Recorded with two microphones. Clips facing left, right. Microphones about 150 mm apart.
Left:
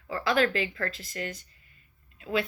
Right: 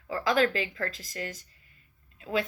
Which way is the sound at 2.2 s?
40° right (ahead or behind).